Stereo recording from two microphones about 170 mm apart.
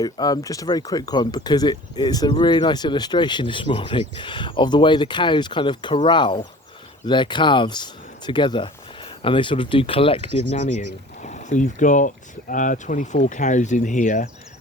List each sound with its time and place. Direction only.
0.0 s speech: 20° left (ahead or behind); by 14.3 s 45° left (ahead or behind)